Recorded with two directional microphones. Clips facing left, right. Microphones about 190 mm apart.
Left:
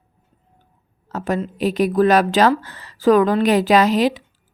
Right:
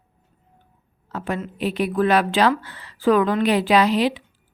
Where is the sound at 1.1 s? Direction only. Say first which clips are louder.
Left 5 dB; 40° left (ahead or behind).